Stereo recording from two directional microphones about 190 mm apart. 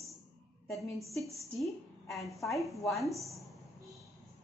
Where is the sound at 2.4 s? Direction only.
Centre (ahead or behind).